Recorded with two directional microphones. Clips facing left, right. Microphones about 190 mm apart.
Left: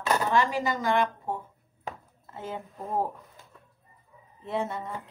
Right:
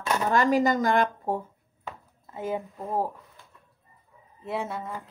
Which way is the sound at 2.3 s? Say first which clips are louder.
Right 6 dB; 15° right (ahead or behind).